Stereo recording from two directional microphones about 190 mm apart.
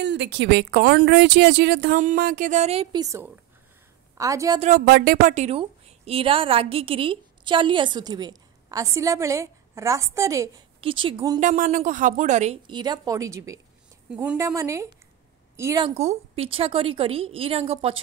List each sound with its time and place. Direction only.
0.0 s a woman's voice: 65° right (ahead or behind); by 4.6 s 15° right (ahead or behind)
4.6 s a woman's voice: 40° right (ahead or behind)
4.8 s a woman's voice: 55° right (ahead or behind); by 10.5 s 15° right (ahead or behind)
10.8 s a woman's voice: 25° right (ahead or behind)
11.3 s a woman's voice: 40° right (ahead or behind)
12.6 s a woman's voice: 20° right (ahead or behind)
16.0 s a woman's voice: 35° right (ahead or behind)